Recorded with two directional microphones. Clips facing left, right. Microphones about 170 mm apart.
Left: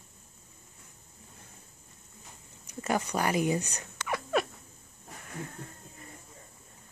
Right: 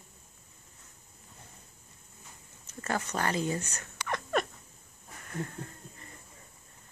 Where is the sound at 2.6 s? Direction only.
15° left (ahead or behind).